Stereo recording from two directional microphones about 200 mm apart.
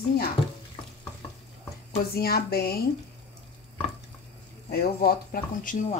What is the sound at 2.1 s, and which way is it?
Speech, 50° left (ahead or behind).